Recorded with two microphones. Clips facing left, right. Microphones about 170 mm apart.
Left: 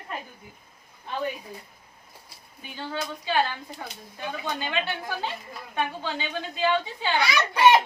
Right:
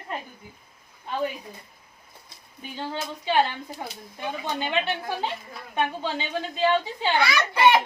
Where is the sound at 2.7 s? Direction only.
20° right (ahead or behind).